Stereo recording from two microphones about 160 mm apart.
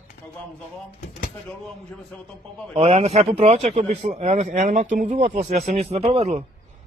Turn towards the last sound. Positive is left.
turn(degrees=-40)  # may be behind; listen again after turning